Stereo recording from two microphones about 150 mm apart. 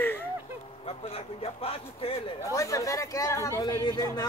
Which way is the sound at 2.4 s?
20° left (ahead or behind).